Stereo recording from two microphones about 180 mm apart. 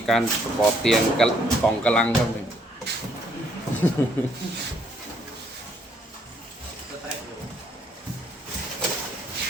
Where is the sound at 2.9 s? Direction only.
70° right (ahead or behind).